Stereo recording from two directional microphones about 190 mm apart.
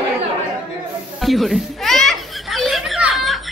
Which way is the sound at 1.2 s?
Centre (ahead or behind).